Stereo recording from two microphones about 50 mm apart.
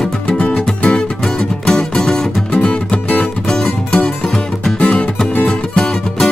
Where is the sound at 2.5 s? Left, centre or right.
Left.